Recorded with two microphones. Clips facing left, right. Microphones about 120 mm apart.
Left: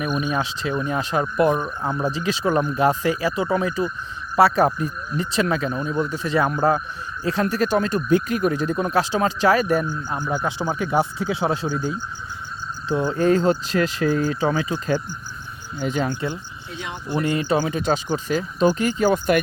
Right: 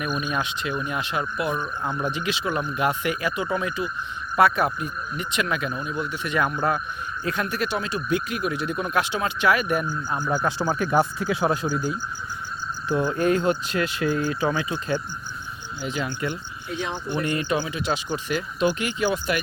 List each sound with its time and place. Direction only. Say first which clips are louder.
0.0 s speech: left 3 dB; 25° left (ahead or behind)
10.3 s speech: even; 20° left (ahead or behind)
17.5 s speech: left 4 dB; 40° left (ahead or behind)